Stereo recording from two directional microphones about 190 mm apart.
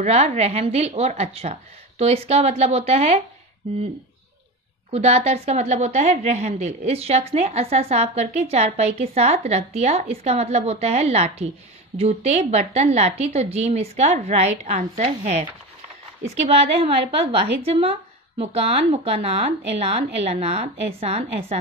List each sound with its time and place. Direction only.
0.0 s a woman's voice: 35° right (ahead or behind)
4.9 s a woman's voice: 35° right (ahead or behind)
16.4 s a woman's voice: 30° right (ahead or behind)